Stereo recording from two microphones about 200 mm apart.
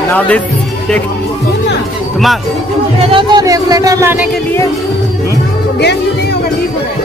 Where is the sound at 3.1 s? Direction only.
25° right (ahead or behind).